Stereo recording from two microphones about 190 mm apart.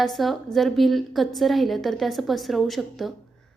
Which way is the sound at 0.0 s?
Centre (ahead or behind).